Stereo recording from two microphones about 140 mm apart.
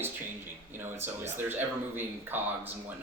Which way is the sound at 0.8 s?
15° right (ahead or behind).